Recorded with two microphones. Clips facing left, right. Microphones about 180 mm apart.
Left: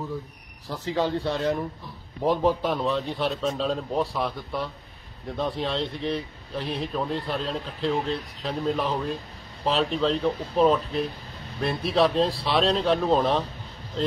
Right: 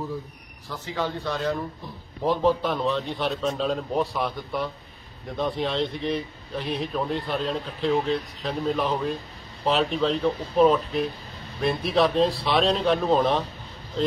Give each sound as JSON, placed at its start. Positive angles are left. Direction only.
{"t": 0.7, "sound": "speech", "side_deg": 30}
{"t": 2.2, "sound": "a man's voice", "side_deg": 10}